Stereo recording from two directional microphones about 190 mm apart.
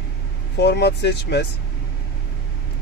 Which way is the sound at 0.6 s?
60° left (ahead or behind).